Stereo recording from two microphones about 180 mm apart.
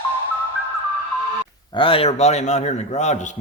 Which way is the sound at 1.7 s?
30° left (ahead or behind).